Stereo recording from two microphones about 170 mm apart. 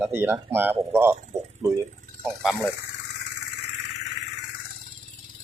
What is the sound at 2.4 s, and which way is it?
Speech, 5° right (ahead or behind).